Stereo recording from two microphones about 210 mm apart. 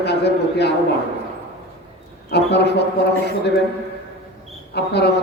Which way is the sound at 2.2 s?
50° left (ahead or behind).